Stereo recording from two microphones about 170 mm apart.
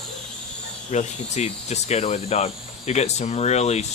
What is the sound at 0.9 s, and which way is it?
Speech, 40° left (ahead or behind).